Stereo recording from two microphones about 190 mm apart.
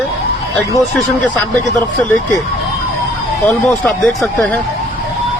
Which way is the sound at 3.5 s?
5° left (ahead or behind).